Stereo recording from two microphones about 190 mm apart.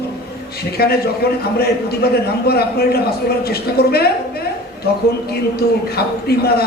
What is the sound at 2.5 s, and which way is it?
A man's voice, 55° left (ahead or behind).